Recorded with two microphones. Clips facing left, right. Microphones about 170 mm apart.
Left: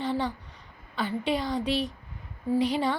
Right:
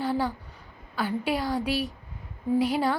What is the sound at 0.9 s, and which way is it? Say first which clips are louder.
A woman's voice: right 1 dB; 5° right (ahead or behind).